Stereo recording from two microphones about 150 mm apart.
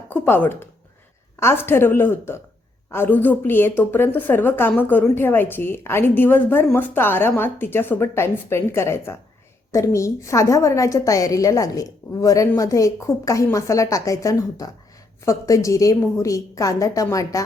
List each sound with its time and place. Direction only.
0.1 s a woman's voice: 15° left (ahead or behind)